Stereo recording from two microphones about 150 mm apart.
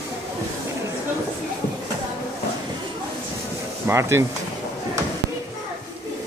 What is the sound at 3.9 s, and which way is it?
Speech, 20° right (ahead or behind).